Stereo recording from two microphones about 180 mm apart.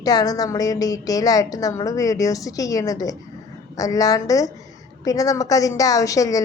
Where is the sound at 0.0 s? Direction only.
20° left (ahead or behind).